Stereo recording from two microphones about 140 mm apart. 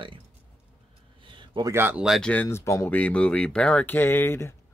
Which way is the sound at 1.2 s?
35° right (ahead or behind).